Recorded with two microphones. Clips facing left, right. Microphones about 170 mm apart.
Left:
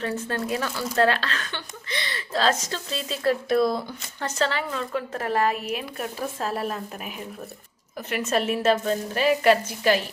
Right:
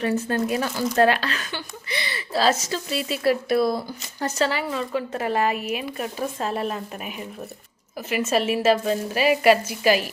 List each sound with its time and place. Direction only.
0.0 s a woman's voice: 15° right (ahead or behind)